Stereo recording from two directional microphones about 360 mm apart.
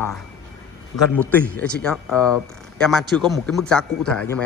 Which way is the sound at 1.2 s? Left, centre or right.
Centre.